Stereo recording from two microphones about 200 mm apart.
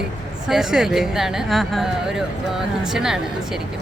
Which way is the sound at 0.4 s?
Centre (ahead or behind).